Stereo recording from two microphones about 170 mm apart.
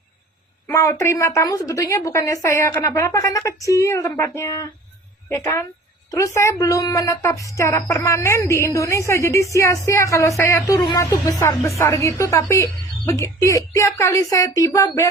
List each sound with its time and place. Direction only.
0.7 s a woman's voice: 15° left (ahead or behind)